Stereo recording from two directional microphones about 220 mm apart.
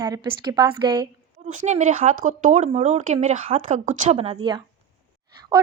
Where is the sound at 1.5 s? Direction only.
30° right (ahead or behind).